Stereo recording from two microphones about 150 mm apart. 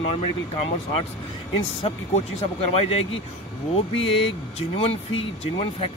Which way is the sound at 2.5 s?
40° left (ahead or behind).